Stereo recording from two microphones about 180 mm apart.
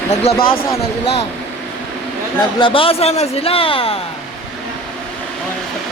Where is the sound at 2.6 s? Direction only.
30° left (ahead or behind).